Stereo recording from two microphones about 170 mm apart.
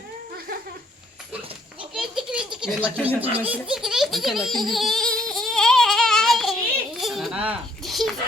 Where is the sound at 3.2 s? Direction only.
35° right (ahead or behind).